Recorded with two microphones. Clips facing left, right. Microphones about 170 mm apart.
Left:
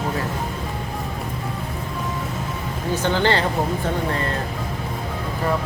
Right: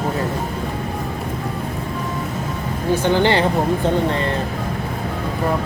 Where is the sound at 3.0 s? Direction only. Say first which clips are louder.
Right 3 dB; 15° right (ahead or behind).